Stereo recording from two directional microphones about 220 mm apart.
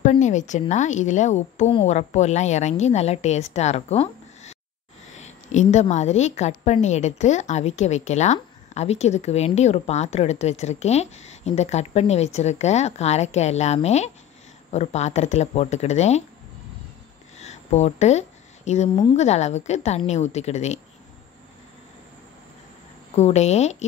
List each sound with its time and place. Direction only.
0.0 s a woman's voice: 35° left (ahead or behind)
17.4 s a woman's voice: 30° left (ahead or behind)
23.1 s a woman's voice: 30° left (ahead or behind)